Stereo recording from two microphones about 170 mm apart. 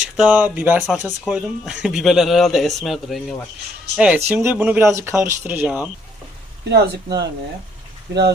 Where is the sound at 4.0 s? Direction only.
10° right (ahead or behind).